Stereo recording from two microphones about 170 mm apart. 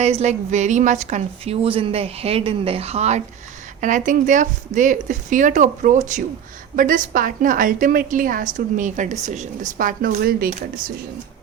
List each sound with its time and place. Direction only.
0.0 s a woman's voice: 40° right (ahead or behind); by 10.5 s 60° right (ahead or behind)